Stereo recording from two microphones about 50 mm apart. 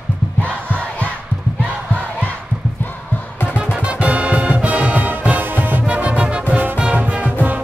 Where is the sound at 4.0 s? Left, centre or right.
Right.